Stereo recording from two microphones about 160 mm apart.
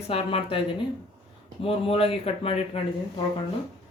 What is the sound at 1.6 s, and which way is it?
Speech, 35° left (ahead or behind).